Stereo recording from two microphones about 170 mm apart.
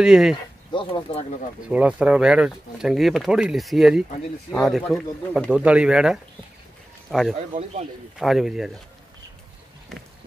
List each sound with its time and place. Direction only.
0.0 s speech: centre (ahead or behind)
0.7 s speech: 30° left (ahead or behind)
1.7 s speech: 10° right (ahead or behind)